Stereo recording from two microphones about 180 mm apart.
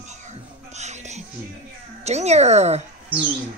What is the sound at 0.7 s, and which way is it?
Music, 40° right (ahead or behind).